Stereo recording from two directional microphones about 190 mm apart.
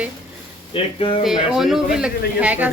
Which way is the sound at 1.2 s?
Centre (ahead or behind).